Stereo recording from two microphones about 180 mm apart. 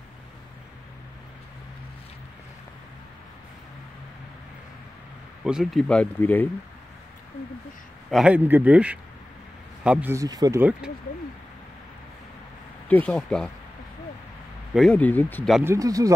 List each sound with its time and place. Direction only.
5.4 s speech: 5° right (ahead or behind)
8.1 s a man's voice: 5° right (ahead or behind); by 10.6 s 20° right (ahead or behind)
13.0 s speech: 5° left (ahead or behind)
14.7 s speech: centre (ahead or behind)
15.6 s speech: 15° right (ahead or behind)